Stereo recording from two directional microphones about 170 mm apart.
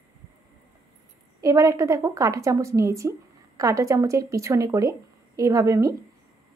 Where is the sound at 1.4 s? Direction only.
20° right (ahead or behind).